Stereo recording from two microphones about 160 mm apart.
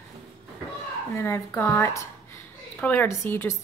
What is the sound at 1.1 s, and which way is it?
A woman's voice, 15° left (ahead or behind).